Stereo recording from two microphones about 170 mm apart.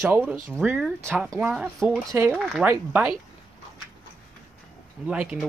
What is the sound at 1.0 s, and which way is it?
Speech, 15° right (ahead or behind).